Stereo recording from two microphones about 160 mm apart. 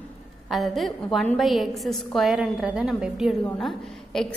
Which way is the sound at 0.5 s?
Centre (ahead or behind).